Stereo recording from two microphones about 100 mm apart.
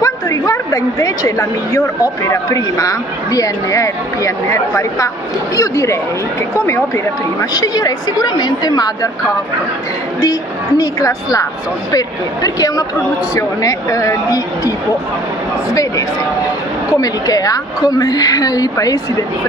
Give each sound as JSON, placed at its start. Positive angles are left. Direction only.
{"t": 0.0, "sound": "a sound", "side_deg": 35}
{"t": 2.2, "sound": "a woman's voice", "side_deg": 30}
{"t": 7.5, "sound": "a woman's voice", "side_deg": 40}
{"t": 10.8, "sound": "a woman's voice", "side_deg": 35}
{"t": 12.4, "sound": "a woman's voice", "side_deg": 40}
{"t": 16.9, "sound": "a woman's voice", "side_deg": 35}